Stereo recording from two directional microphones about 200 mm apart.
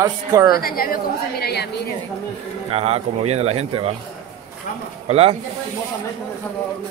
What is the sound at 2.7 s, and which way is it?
Speech, 30° right (ahead or behind).